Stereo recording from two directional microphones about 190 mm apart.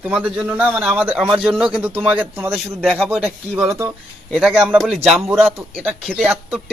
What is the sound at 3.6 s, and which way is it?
A man's voice, 10° right (ahead or behind).